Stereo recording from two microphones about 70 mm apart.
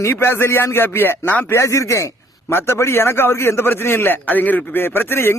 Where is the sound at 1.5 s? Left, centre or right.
Left.